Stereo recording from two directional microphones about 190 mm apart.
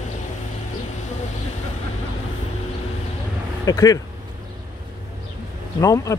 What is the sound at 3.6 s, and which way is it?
Speech, 20° left (ahead or behind).